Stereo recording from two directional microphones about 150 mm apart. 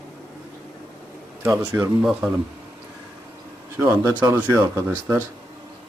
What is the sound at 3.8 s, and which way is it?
Speech, 20° right (ahead or behind).